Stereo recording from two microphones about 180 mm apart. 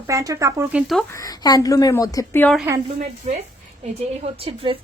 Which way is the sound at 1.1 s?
20° left (ahead or behind).